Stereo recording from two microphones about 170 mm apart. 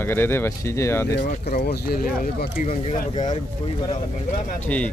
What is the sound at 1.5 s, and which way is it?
Speech, 65° left (ahead or behind).